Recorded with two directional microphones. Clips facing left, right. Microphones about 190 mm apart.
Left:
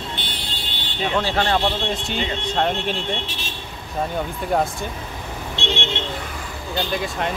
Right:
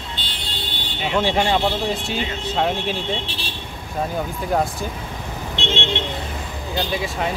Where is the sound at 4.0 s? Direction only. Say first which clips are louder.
Even; 5° right (ahead or behind).